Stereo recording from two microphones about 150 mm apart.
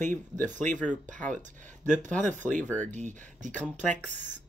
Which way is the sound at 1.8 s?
55° right (ahead or behind).